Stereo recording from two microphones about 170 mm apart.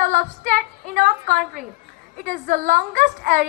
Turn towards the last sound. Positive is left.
turn(degrees=-55)  # may be behind; listen again after turning